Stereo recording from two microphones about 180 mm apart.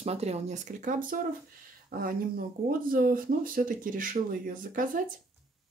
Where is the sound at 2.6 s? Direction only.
50° right (ahead or behind).